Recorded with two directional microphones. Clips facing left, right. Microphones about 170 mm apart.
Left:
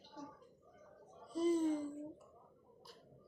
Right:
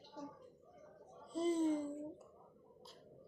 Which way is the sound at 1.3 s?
25° right (ahead or behind).